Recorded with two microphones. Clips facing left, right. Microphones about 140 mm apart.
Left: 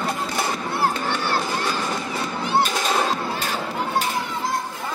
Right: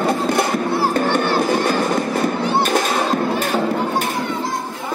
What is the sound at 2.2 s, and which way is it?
Music, 50° right (ahead or behind).